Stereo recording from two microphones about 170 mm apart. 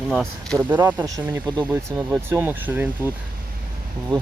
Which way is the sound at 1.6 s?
15° right (ahead or behind).